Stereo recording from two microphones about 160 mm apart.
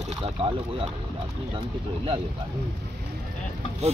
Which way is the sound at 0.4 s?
35° right (ahead or behind).